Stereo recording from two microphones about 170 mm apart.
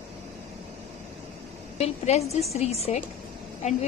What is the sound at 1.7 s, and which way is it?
A woman's voice, 40° left (ahead or behind).